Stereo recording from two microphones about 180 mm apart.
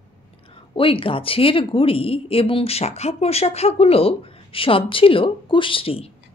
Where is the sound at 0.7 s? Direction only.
30° left (ahead or behind).